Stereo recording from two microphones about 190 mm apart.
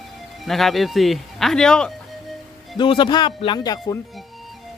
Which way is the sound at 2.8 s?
25° left (ahead or behind).